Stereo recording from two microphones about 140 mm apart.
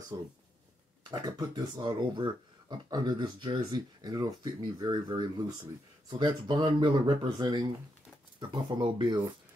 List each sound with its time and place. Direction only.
0.1 s speech: 30° right (ahead or behind)